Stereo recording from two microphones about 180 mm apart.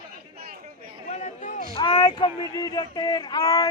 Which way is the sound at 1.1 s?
40° left (ahead or behind).